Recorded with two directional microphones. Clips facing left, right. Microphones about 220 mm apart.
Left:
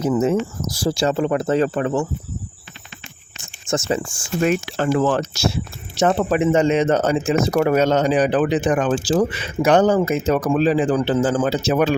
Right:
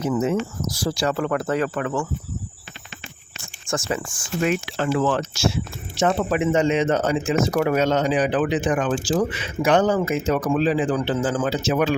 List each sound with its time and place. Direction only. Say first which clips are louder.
0.1 s speech: left 3 dB; 35° left (ahead or behind)
3.7 s speech: left 4 dB; 25° left (ahead or behind)
4.4 s speech: left 3 dB; 40° left (ahead or behind)